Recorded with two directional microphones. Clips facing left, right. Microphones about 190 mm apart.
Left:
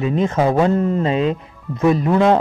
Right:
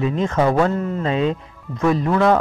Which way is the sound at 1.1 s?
5° left (ahead or behind).